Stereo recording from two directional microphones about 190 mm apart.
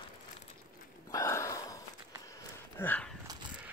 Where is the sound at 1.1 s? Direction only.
15° left (ahead or behind).